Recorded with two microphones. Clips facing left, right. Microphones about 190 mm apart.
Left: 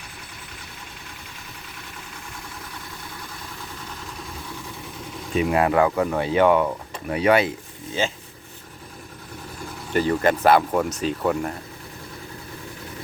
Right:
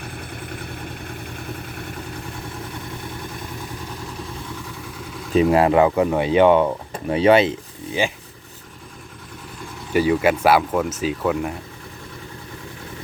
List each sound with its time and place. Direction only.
0.5 s vehicle: 55° right (ahead or behind)
5.3 s speech: 30° right (ahead or behind)
8.0 s speech: 15° right (ahead or behind)
9.9 s speech: 10° right (ahead or behind)